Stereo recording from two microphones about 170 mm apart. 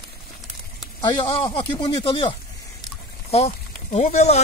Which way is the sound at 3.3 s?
40° left (ahead or behind).